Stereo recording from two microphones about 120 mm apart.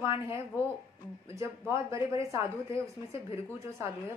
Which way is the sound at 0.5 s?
20° right (ahead or behind).